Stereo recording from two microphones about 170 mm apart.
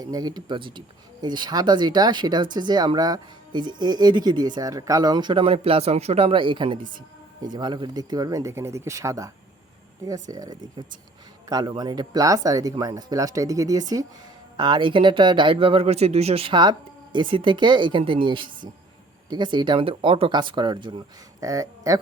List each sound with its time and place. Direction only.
0.0 s a man's voice: 20° right (ahead or behind)